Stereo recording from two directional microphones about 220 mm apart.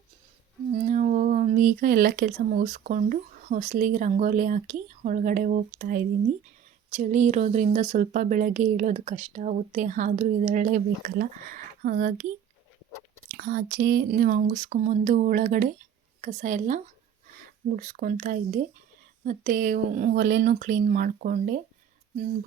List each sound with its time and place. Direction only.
0.7 s speech: 35° right (ahead or behind)
13.3 s speech: 45° right (ahead or behind)